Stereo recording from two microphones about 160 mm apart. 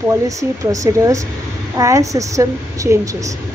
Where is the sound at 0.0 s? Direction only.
20° right (ahead or behind).